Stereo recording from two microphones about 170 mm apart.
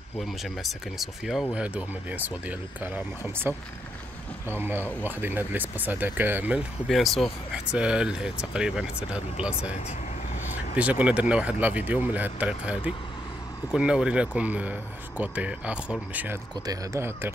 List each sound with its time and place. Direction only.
0.2 s speech: centre (ahead or behind)
4.6 s speech: 10° right (ahead or behind)
10.8 s speech: 10° right (ahead or behind)
13.7 s speech: 5° right (ahead or behind)